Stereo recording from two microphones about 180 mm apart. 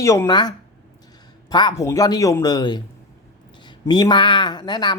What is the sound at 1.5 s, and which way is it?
A woman's voice, 20° left (ahead or behind).